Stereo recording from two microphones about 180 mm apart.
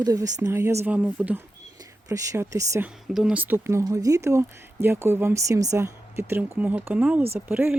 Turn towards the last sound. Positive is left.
turn(degrees=-10)  # may be behind; listen again after turning